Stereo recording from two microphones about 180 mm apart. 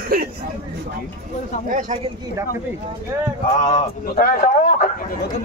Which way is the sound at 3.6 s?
45° left (ahead or behind).